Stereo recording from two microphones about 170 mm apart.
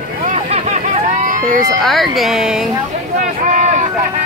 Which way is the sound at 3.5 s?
45° right (ahead or behind).